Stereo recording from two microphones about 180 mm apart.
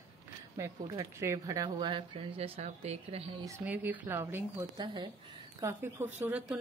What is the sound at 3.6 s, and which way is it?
A woman's voice, 10° right (ahead or behind).